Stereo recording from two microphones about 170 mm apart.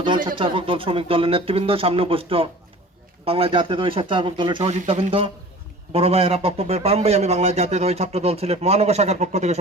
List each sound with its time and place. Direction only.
0.3 s a man's voice: 30° right (ahead or behind)
4.7 s a man's voice: 40° right (ahead or behind)